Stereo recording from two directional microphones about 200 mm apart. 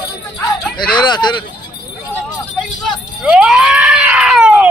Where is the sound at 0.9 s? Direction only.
20° left (ahead or behind).